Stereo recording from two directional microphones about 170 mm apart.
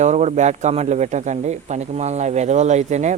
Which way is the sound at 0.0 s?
40° right (ahead or behind).